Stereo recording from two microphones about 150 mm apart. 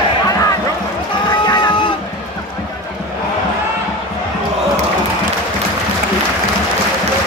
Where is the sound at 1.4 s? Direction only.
30° left (ahead or behind).